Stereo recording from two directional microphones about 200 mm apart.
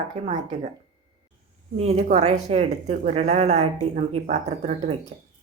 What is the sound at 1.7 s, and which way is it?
Speech, 30° right (ahead or behind).